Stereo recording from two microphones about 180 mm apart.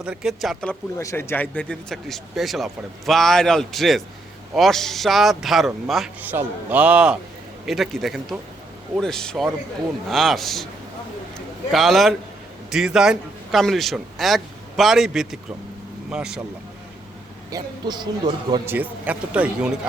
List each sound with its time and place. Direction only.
0.0 s speech: 5° right (ahead or behind)
11.7 s a man's voice: centre (ahead or behind)
17.5 s a man's voice: 25° right (ahead or behind)
18.6 s speech: 10° right (ahead or behind)